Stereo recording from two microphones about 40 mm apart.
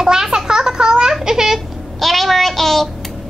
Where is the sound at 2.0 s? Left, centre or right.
Centre.